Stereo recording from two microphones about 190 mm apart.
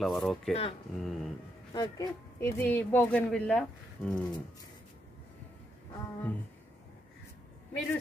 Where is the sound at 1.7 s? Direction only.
20° left (ahead or behind); by 4.1 s 5° left (ahead or behind).